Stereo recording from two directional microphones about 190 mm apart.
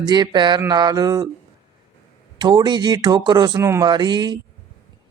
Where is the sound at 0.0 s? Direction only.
20° right (ahead or behind).